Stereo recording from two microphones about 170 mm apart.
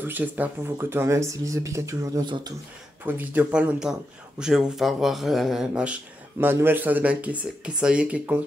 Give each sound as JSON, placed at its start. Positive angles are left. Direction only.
{"t": 0.0, "sound": "speech", "side_deg": -10}
{"t": 3.1, "sound": "speech", "side_deg": -10}